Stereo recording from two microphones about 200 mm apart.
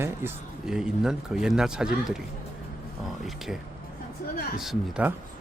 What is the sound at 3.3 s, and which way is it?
Speech, centre (ahead or behind).